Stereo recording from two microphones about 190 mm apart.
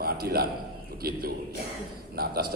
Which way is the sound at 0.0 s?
55° right (ahead or behind).